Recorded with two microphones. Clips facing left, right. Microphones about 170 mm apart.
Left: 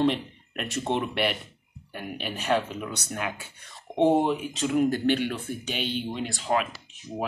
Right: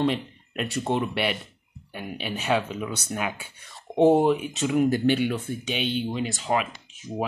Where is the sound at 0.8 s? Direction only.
5° right (ahead or behind).